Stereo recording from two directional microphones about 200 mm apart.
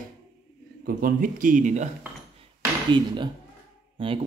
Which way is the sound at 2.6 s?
25° right (ahead or behind).